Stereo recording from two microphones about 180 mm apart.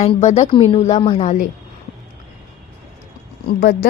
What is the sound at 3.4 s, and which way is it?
Speech, 55° left (ahead or behind).